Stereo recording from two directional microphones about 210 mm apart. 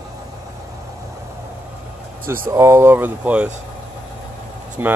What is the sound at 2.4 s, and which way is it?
Speech, 15° right (ahead or behind).